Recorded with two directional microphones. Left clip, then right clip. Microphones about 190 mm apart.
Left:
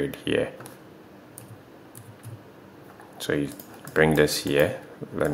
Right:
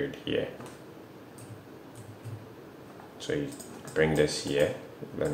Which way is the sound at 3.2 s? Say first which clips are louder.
Left 5 dB; 40° left (ahead or behind).